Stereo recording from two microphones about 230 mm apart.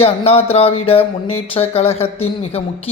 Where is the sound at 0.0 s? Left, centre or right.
Left.